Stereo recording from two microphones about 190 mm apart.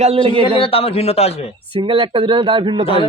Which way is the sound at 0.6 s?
30° left (ahead or behind).